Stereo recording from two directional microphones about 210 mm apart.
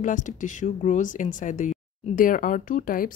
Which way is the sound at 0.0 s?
35° left (ahead or behind).